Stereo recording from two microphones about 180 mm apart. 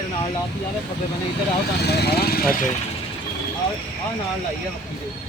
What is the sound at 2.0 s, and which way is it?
Speech, 60° left (ahead or behind).